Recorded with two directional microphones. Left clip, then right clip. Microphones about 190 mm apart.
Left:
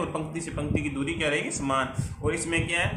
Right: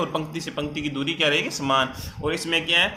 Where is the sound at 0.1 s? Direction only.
40° right (ahead or behind).